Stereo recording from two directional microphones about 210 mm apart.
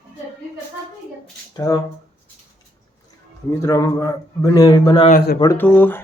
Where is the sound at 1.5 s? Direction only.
15° left (ahead or behind).